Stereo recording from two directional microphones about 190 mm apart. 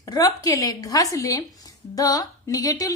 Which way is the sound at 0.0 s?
20° left (ahead or behind).